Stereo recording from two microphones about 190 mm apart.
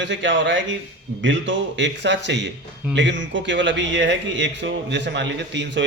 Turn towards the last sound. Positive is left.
turn(degrees=-70)  # may be behind; listen again after turning